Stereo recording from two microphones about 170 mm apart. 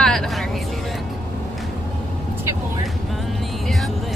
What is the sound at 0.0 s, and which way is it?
Vehicle, 5° left (ahead or behind).